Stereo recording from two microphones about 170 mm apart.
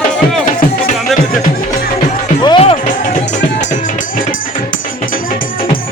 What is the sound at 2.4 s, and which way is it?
Music, 25° left (ahead or behind).